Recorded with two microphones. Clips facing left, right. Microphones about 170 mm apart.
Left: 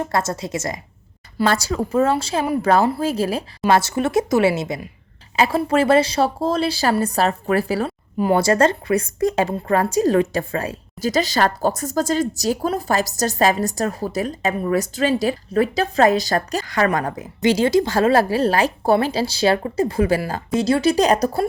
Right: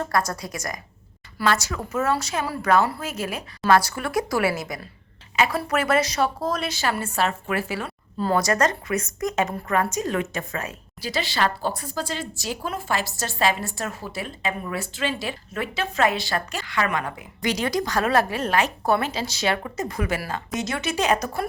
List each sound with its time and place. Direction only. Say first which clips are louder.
0.0 s a woman's voice: left 3 dB; 25° left (ahead or behind)
8.2 s a woman's voice: left 5 dB; 25° left (ahead or behind)
17.4 s a woman's voice: left 8 dB; 25° left (ahead or behind)